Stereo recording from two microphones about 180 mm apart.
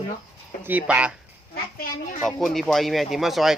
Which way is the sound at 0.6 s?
10° right (ahead or behind).